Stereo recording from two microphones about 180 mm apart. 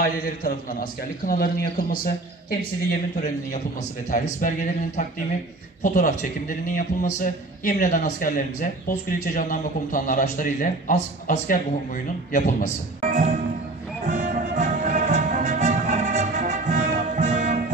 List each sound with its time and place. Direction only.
0.0 s a man's voice: 50° left (ahead or behind)
4.1 s a man's voice: 50° left (ahead or behind)
13.0 s music: 45° right (ahead or behind)